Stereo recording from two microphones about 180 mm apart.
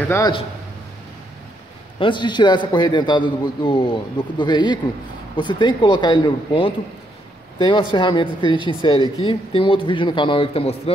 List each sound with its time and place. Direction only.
0.1 s a man's voice: 20° left (ahead or behind)
2.0 s a man's voice: 25° left (ahead or behind)